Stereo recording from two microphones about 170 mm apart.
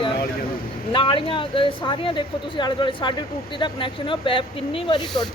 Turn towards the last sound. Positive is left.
turn(degrees=30)  # may be behind; listen again after turning